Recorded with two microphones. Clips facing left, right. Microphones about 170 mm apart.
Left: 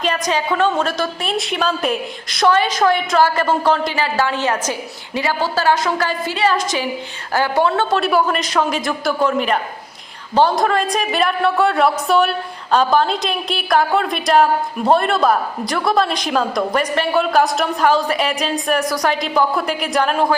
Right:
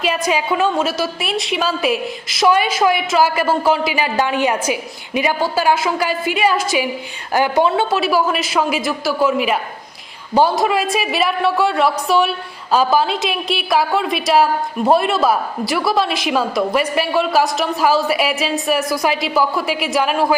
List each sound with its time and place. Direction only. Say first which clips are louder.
0.0 s a woman's voice: right 1 dB; 10° right (ahead or behind)
7.9 s a woman's voice: even; 5° right (ahead or behind)